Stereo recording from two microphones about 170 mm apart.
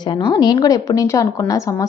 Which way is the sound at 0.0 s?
25° left (ahead or behind).